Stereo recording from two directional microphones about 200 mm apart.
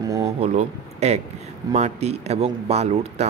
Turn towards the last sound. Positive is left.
turn(degrees=-35)  # may be behind; listen again after turning